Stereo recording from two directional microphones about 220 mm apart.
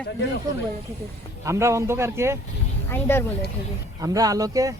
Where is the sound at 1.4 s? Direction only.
15° right (ahead or behind).